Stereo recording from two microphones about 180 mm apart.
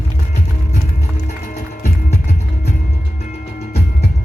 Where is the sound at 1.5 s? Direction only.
50° left (ahead or behind).